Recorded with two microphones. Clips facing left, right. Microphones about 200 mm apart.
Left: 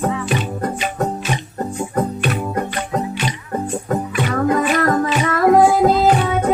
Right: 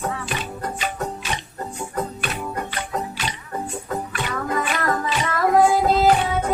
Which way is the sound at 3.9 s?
50° left (ahead or behind).